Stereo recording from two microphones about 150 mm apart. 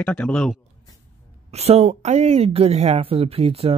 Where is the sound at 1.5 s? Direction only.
45° right (ahead or behind).